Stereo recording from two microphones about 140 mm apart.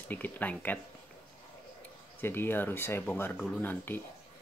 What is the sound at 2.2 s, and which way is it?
Speech, 15° left (ahead or behind).